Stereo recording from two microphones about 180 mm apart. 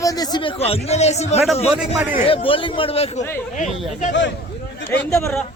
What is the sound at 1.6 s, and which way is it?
Speech, 5° right (ahead or behind).